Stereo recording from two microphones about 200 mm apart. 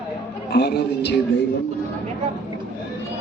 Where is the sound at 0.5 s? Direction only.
55° left (ahead or behind).